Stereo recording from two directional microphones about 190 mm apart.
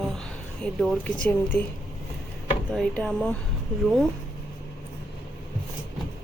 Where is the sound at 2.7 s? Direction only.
Centre (ahead or behind).